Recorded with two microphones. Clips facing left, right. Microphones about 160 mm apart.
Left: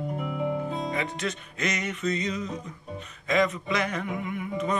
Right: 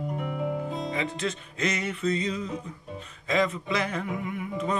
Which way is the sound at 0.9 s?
25° right (ahead or behind).